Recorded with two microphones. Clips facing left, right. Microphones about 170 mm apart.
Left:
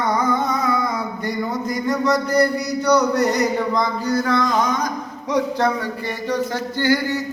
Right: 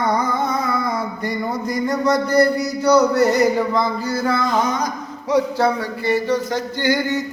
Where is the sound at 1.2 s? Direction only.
Centre (ahead or behind); by 7.2 s 20° right (ahead or behind).